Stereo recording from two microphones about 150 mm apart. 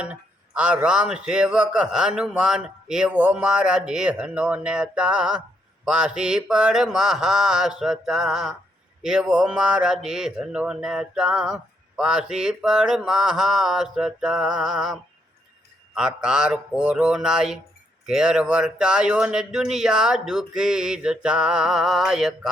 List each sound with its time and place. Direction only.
0.0 s speech: 10° right (ahead or behind)
16.0 s speech: 5° right (ahead or behind)